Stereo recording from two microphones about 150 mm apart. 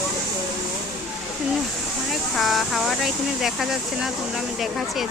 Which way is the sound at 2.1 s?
Centre (ahead or behind).